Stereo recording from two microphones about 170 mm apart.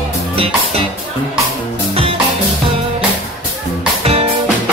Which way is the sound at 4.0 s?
35° right (ahead or behind).